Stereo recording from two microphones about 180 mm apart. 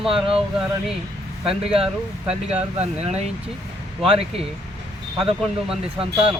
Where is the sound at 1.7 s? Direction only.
30° right (ahead or behind).